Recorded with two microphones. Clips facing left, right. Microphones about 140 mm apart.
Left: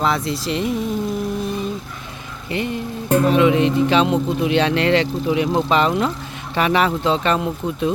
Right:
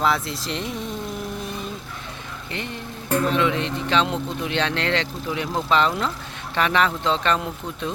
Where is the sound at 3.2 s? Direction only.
10° left (ahead or behind).